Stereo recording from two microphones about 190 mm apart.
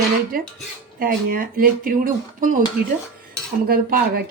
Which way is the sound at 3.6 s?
50° right (ahead or behind).